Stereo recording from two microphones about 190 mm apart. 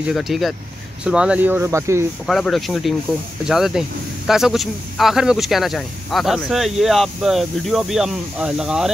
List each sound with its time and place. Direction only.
0.1 s speech: centre (ahead or behind)
2.2 s speech: centre (ahead or behind)